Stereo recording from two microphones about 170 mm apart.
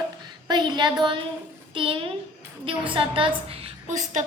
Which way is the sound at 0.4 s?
25° right (ahead or behind).